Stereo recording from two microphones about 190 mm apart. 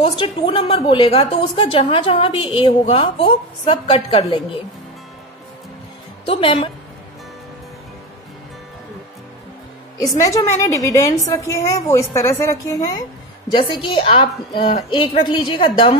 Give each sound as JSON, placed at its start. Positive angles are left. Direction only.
{"t": 0.0, "sound": "a woman's voice", "side_deg": 25}
{"t": 6.2, "sound": "a woman's voice", "side_deg": 30}
{"t": 9.9, "sound": "a woman's voice", "side_deg": 15}